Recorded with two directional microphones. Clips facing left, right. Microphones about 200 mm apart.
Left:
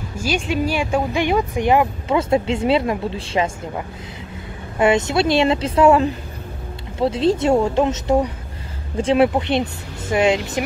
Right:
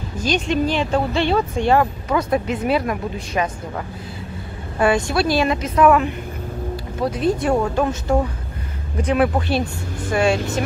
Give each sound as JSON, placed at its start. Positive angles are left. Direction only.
{"t": 0.2, "sound": "speech", "side_deg": 10}
{"t": 4.7, "sound": "speech", "side_deg": 20}